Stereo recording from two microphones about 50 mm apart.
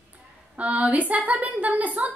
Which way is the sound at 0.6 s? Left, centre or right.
Right.